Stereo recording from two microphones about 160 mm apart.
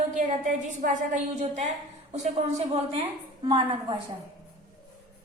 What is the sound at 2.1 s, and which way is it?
Speech, 40° right (ahead or behind).